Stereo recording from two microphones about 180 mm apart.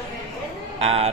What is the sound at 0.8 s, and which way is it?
Speech, 35° right (ahead or behind).